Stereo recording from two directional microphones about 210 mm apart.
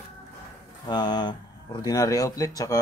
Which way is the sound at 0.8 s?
20° left (ahead or behind).